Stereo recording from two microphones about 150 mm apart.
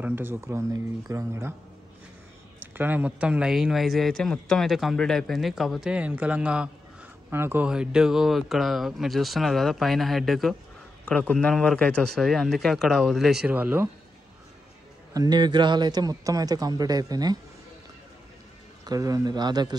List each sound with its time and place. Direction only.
0.0 s speech: 15° right (ahead or behind)
2.6 s speech: 10° right (ahead or behind)
15.1 s a man's voice: 30° right (ahead or behind)
18.9 s a man's voice: 25° right (ahead or behind)